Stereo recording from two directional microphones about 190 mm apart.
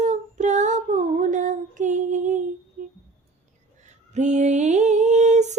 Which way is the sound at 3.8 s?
40° right (ahead or behind).